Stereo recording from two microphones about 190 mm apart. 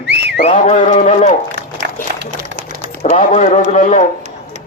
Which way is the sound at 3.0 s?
35° left (ahead or behind).